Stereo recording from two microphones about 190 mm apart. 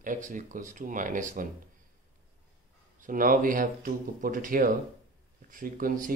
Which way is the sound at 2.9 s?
45° right (ahead or behind).